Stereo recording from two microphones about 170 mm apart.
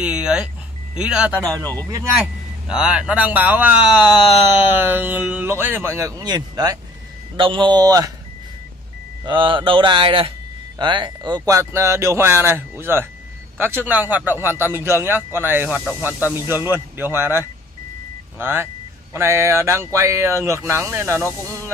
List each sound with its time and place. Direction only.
0.0 s vehicle: 5° right (ahead or behind)
0.9 s speech: 5° right (ahead or behind)
2.7 s speech: 5° right (ahead or behind); by 8.1 s 20° right (ahead or behind)
9.2 s speech: 30° right (ahead or behind)